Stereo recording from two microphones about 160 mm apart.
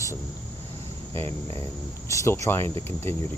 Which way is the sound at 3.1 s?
15° left (ahead or behind).